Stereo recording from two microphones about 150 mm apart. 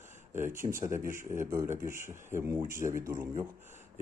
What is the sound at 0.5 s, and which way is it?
Speech, 60° right (ahead or behind).